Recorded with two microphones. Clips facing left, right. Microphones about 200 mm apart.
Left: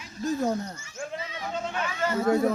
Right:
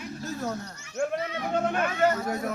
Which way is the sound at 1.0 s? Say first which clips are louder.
Right 7 dB; 60° right (ahead or behind).